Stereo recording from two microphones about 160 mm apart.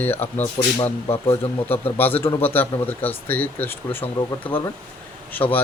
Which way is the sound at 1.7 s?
10° left (ahead or behind).